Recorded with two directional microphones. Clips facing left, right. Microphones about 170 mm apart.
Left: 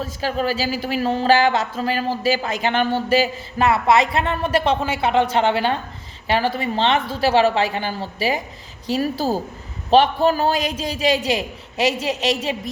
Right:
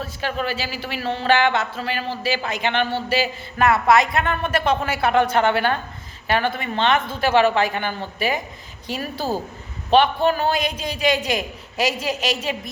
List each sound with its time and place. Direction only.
0.0 s a woman's voice: 35° left (ahead or behind)
3.7 s a woman's voice: 25° left (ahead or behind)